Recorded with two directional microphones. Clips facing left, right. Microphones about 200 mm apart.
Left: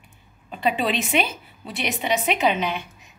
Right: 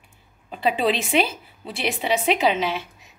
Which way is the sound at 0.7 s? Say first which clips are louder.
Right 1 dB; 30° right (ahead or behind).